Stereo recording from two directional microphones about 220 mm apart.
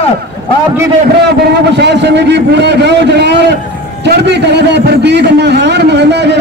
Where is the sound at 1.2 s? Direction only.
50° right (ahead or behind).